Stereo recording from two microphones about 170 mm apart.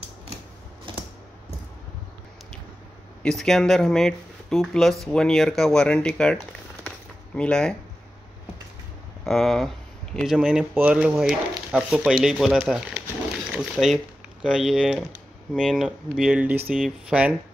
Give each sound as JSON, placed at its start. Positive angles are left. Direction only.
{"t": 0.9, "sound": "a sound", "side_deg": -30}
{"t": 3.2, "sound": "speech", "side_deg": 5}
{"t": 9.2, "sound": "speech", "side_deg": 0}